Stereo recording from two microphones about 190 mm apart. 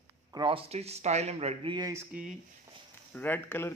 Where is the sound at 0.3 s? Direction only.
25° right (ahead or behind).